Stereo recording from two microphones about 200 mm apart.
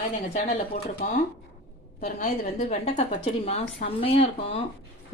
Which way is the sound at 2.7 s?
30° left (ahead or behind).